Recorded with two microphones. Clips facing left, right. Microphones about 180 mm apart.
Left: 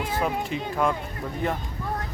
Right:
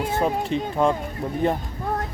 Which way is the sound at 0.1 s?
30° right (ahead or behind).